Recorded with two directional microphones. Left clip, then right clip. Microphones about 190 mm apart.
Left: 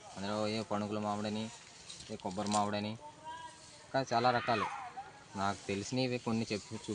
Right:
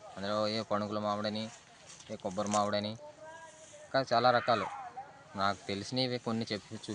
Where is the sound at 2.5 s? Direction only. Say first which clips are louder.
Right 2 dB; 25° right (ahead or behind).